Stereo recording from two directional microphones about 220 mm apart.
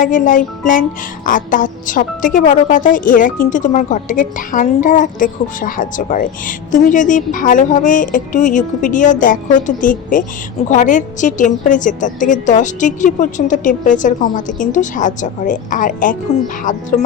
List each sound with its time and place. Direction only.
0.0 s speech: 35° left (ahead or behind)